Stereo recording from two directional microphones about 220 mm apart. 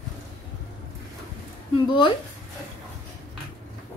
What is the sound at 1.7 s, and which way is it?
Speech, 20° left (ahead or behind).